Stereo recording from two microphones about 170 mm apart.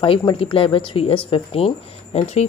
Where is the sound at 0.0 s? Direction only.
30° left (ahead or behind).